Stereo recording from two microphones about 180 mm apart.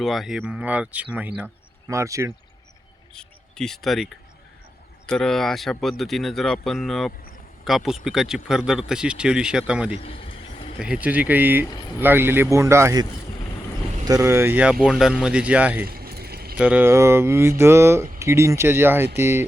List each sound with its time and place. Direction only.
0.0 s speech: centre (ahead or behind); by 2.3 s 15° right (ahead or behind)
3.2 s speech: 5° left (ahead or behind)
9.9 s a sound: 35° left (ahead or behind)
10.8 s speech: 5° right (ahead or behind)
15.9 s a sound: 55° right (ahead or behind)
16.6 s speech: 10° right (ahead or behind)